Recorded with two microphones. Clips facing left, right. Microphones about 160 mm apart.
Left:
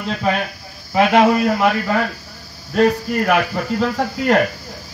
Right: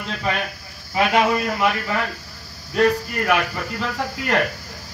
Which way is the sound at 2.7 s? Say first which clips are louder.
Left 3 dB; 45° left (ahead or behind).